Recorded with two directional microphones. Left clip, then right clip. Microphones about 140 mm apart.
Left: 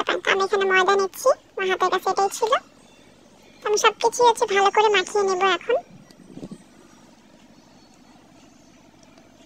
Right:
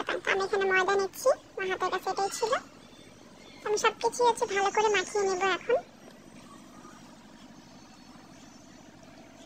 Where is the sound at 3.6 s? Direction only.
35° left (ahead or behind).